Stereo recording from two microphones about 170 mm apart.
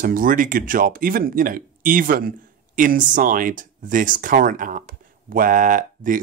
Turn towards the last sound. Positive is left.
turn(degrees=-55)  # may be behind; listen again after turning